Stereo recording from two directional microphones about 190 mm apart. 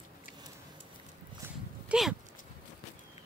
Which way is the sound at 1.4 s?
5° right (ahead or behind).